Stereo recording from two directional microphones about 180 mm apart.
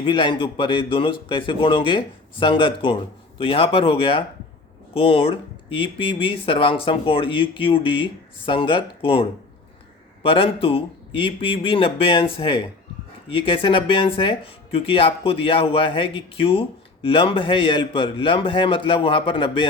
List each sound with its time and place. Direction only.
0.0 s speech: 25° left (ahead or behind)
10.2 s speech: 30° left (ahead or behind)